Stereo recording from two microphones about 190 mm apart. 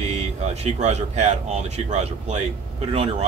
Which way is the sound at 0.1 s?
35° right (ahead or behind).